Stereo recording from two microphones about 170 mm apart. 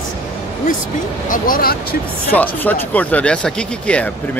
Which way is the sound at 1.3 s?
60° left (ahead or behind).